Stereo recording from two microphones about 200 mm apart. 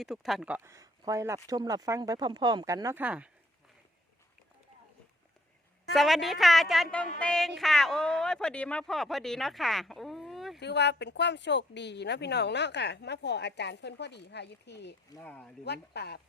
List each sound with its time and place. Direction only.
0.0 s speech: centre (ahead or behind)
5.9 s a woman's voice: centre (ahead or behind)
10.6 s speech: 60° left (ahead or behind)
15.2 s speech: 5° left (ahead or behind)
15.6 s speech: 55° left (ahead or behind)